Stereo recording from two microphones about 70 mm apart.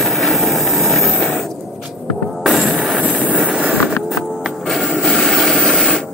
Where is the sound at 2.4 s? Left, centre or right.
Centre.